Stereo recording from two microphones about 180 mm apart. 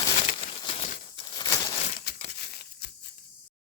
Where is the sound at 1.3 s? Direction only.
20° left (ahead or behind).